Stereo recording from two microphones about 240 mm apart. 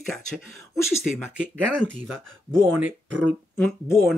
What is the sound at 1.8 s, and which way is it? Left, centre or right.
Speech, left.